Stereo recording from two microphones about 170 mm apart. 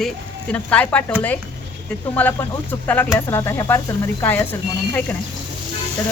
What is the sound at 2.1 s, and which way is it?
Speech, 10° left (ahead or behind).